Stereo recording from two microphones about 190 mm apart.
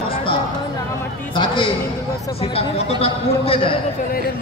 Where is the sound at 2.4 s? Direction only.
30° left (ahead or behind).